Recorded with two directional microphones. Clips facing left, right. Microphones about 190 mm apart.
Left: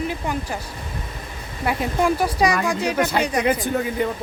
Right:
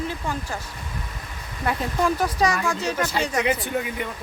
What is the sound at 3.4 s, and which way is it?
Speech, 45° left (ahead or behind).